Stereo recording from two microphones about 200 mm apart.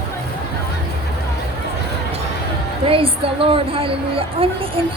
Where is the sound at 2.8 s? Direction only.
25° right (ahead or behind).